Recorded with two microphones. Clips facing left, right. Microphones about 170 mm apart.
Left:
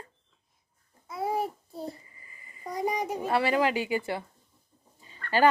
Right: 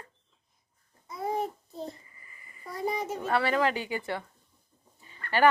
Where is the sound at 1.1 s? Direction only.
5° left (ahead or behind).